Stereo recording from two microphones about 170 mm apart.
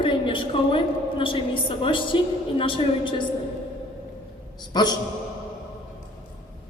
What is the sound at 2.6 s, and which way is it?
Speech, 30° left (ahead or behind).